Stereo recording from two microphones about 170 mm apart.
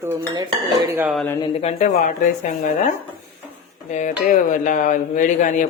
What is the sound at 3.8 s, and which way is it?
Speech, 45° left (ahead or behind).